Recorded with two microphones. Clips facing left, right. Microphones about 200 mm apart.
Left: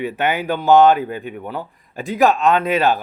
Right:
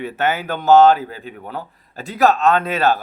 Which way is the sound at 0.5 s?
40° right (ahead or behind).